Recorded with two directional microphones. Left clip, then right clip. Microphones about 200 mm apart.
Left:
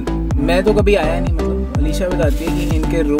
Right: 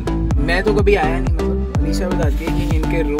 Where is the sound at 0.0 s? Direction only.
5° right (ahead or behind).